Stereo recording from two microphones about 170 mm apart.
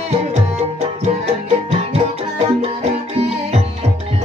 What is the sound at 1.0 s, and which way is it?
Music, 40° right (ahead or behind).